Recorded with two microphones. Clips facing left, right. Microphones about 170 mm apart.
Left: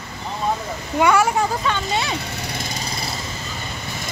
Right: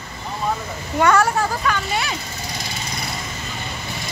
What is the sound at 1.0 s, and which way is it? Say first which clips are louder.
Speech: even; 10° left (ahead or behind).